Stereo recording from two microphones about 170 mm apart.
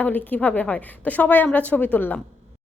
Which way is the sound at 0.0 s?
10° left (ahead or behind).